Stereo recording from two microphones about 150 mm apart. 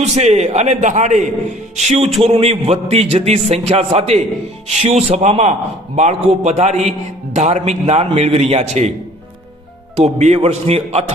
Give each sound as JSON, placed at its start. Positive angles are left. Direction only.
{"t": 0.0, "sound": "a man's voice", "side_deg": -45}
{"t": 9.9, "sound": "a man's voice", "side_deg": -50}